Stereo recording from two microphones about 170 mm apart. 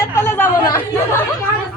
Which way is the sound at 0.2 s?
10° left (ahead or behind).